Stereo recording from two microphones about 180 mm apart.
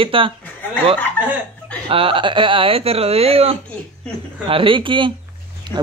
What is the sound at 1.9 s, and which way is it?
Speech, 30° right (ahead or behind).